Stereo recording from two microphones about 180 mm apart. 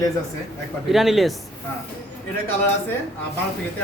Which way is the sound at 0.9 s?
Centre (ahead or behind).